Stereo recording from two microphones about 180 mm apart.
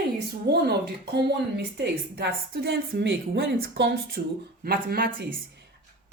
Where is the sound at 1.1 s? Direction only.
65° right (ahead or behind).